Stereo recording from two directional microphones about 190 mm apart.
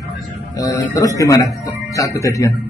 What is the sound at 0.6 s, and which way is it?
A man's voice, 15° left (ahead or behind).